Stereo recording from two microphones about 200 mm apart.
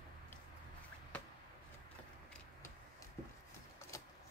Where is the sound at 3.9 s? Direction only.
15° left (ahead or behind).